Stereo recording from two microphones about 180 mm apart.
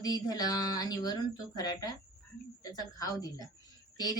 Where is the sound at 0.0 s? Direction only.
20° left (ahead or behind).